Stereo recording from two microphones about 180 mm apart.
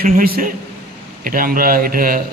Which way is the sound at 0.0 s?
50° right (ahead or behind).